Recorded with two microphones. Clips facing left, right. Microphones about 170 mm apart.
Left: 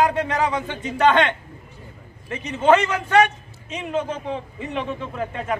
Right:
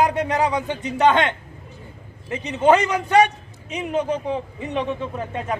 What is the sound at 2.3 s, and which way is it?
Speech, 20° right (ahead or behind).